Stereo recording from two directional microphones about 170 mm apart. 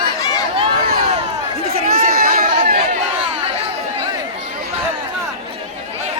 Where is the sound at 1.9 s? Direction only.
55° right (ahead or behind).